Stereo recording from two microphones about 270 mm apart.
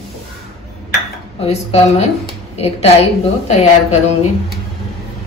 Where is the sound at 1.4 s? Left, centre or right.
Left.